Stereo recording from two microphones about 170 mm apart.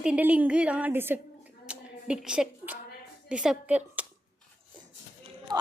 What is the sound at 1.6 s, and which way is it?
Clapping, 5° right (ahead or behind).